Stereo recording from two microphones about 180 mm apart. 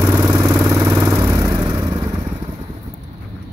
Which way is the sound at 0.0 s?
15° right (ahead or behind).